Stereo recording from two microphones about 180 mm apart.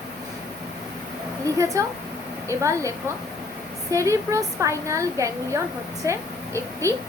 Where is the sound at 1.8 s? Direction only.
15° right (ahead or behind).